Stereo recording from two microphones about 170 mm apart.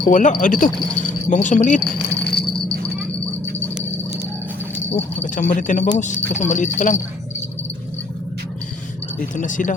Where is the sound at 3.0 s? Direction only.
15° right (ahead or behind).